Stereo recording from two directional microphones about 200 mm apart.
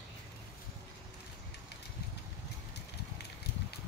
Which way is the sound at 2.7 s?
55° left (ahead or behind).